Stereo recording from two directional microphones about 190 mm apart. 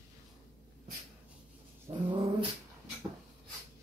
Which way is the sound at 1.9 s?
25° right (ahead or behind).